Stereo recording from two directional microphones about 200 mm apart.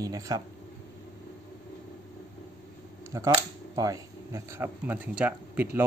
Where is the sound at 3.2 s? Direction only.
20° right (ahead or behind).